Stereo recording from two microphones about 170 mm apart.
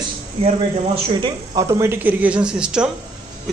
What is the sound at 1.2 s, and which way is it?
A man's voice, 25° right (ahead or behind).